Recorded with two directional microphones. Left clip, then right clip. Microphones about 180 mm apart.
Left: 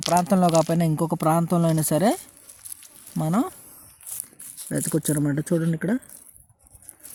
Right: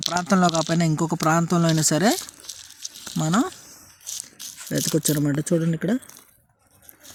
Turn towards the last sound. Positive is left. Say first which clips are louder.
# right 1 dB
turn(degrees=0)  # may be behind; listen again after turning